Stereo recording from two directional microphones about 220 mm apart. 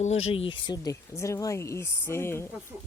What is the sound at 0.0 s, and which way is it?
Speech, 30° left (ahead or behind).